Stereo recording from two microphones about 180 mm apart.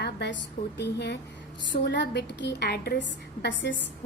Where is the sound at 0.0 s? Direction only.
70° left (ahead or behind).